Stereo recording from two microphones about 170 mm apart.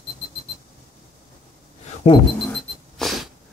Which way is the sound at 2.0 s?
35° left (ahead or behind).